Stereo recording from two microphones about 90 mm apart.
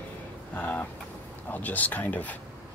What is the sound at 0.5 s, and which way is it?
Speech, 15° left (ahead or behind).